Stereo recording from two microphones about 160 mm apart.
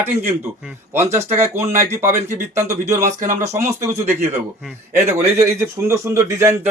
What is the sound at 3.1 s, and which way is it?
Speech, 50° right (ahead or behind).